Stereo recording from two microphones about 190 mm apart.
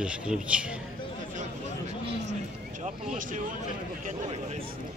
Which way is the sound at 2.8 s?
40° right (ahead or behind).